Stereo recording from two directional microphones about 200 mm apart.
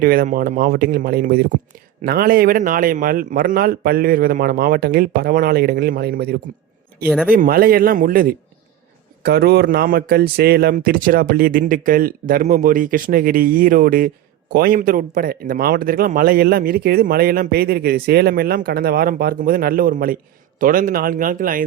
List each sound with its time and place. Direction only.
0.0 s speech: 45° right (ahead or behind)